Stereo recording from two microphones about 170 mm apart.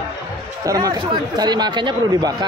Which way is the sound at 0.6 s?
20° right (ahead or behind).